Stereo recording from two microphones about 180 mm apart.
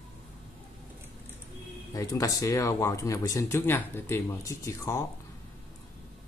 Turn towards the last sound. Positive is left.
turn(degrees=15)  # may be behind; listen again after turning